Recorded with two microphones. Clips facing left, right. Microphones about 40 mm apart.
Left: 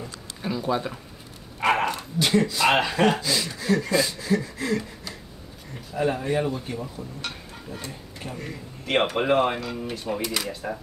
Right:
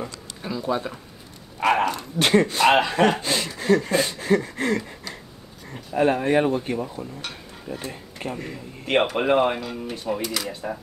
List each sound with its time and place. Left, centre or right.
0.4 s a sound: centre
1.6 s dog: centre
2.1 s speech: right
2.9 s a sound: right
7.9 s speech: right
8.5 s speech: right
9.3 s speech: centre